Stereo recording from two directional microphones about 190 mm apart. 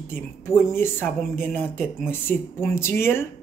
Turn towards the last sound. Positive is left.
turn(degrees=10)  # may be behind; listen again after turning